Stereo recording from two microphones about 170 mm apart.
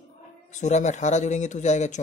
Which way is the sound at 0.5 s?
45° left (ahead or behind).